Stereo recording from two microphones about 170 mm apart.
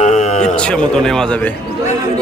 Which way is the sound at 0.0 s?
45° left (ahead or behind).